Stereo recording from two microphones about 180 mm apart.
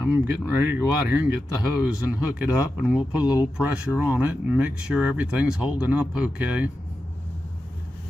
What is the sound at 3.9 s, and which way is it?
Speech, 10° right (ahead or behind).